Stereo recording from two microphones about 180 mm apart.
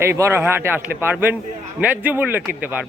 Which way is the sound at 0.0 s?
15° right (ahead or behind).